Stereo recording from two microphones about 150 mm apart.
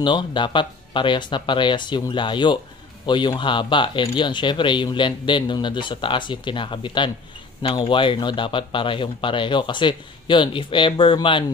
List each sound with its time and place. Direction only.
0.0 s speech: 30° left (ahead or behind)